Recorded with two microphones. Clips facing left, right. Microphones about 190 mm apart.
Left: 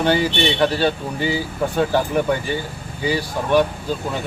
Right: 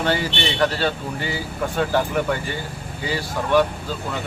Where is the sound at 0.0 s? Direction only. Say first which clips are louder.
Left 5 dB; 15° left (ahead or behind).